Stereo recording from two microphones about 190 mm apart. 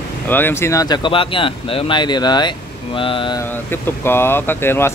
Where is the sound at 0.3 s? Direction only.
10° left (ahead or behind).